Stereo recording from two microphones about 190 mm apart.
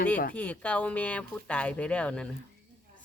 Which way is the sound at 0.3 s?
5° left (ahead or behind).